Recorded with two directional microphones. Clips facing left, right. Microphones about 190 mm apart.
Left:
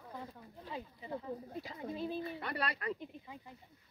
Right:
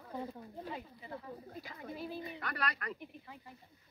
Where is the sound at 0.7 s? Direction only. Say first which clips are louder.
Left 3 dB; 15° left (ahead or behind).